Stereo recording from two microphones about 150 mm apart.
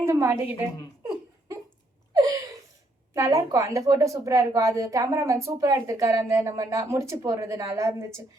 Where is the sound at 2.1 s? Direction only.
25° right (ahead or behind).